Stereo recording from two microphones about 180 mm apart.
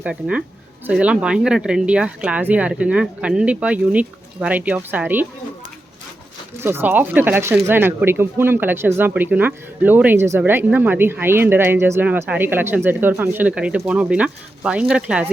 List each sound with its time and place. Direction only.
0.0 s speech: 5° right (ahead or behind)
6.6 s speech: 10° right (ahead or behind)